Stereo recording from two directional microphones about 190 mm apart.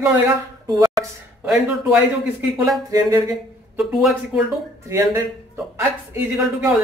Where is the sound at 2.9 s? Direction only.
20° right (ahead or behind).